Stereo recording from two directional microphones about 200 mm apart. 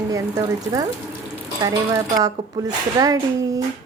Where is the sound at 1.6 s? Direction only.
20° right (ahead or behind).